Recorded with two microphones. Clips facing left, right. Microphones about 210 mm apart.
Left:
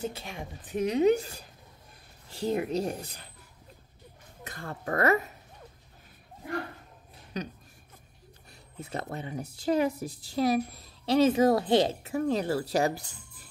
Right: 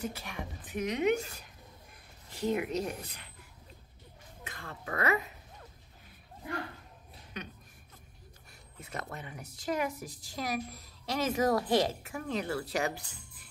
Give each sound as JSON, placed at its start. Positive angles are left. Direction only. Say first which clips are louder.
{"t": 0.0, "sound": "a woman's voice", "louder": "left 3 dB", "side_deg": 25}
{"t": 4.5, "sound": "speech", "louder": "left 7 dB", "side_deg": 40}
{"t": 7.3, "sound": "a woman's voice", "louder": "left 8 dB", "side_deg": 35}
{"t": 8.9, "sound": "a woman's voice", "louder": "left 7 dB", "side_deg": 30}